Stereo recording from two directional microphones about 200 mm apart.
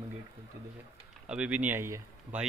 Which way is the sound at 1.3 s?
5° right (ahead or behind).